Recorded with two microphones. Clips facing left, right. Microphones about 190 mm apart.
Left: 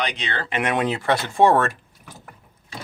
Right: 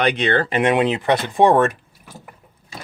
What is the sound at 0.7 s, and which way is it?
Speech, 20° right (ahead or behind).